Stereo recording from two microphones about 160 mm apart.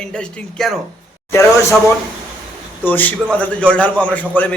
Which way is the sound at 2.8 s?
10° left (ahead or behind).